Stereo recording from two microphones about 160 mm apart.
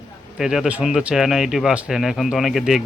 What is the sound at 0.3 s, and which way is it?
Speech, centre (ahead or behind).